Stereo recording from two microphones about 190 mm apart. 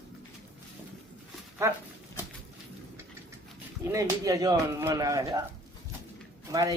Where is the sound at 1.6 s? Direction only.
15° right (ahead or behind).